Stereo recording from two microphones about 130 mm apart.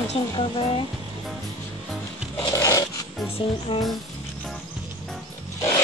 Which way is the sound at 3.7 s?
40° left (ahead or behind).